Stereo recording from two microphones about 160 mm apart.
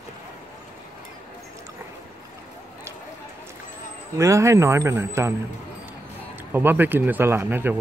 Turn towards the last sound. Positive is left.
turn(degrees=-15)  # may be behind; listen again after turning